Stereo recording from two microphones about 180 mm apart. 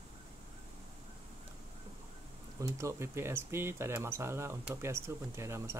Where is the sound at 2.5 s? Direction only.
15° right (ahead or behind).